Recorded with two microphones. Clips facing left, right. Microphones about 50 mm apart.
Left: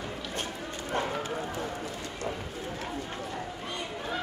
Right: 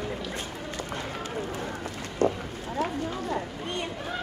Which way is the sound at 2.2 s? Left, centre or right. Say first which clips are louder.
Right 11 dB; right.